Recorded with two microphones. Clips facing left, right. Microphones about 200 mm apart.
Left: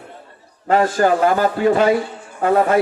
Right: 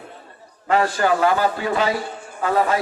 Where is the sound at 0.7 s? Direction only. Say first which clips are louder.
Left 3 dB; 45° left (ahead or behind).